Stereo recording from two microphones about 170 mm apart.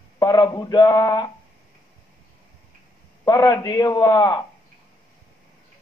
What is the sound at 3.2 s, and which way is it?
A man's voice, 20° left (ahead or behind).